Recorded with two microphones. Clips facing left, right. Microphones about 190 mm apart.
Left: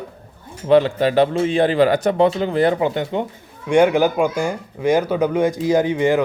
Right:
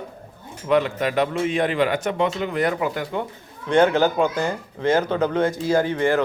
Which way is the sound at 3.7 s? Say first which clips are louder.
Left 3 dB; 15° left (ahead or behind).